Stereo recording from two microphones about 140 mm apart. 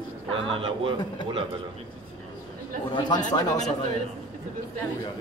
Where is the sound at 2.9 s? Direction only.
30° left (ahead or behind).